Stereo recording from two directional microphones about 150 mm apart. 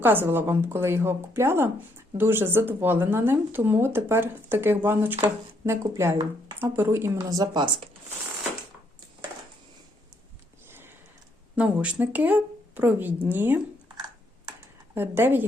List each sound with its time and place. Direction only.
0.0 s speech: 15° right (ahead or behind)
7.2 s speech: 25° right (ahead or behind)
11.5 s speech: 10° right (ahead or behind)
14.9 s speech: 15° right (ahead or behind)